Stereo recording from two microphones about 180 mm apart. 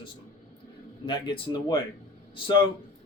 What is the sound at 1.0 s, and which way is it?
A man's voice, 25° left (ahead or behind).